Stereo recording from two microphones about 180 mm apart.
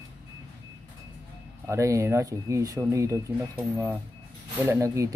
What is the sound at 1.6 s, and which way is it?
Speech, 15° right (ahead or behind).